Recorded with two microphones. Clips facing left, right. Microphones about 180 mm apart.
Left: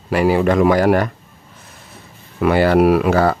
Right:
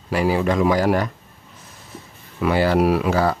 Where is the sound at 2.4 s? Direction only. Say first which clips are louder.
Left 5 dB; 60° left (ahead or behind).